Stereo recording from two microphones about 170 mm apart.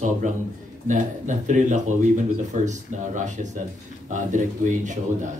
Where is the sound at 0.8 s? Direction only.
45° right (ahead or behind).